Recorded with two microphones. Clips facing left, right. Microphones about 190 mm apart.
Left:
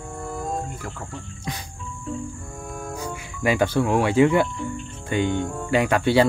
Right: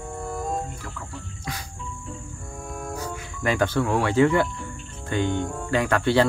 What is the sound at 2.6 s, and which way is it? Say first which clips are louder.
Music: even; centre (ahead or behind).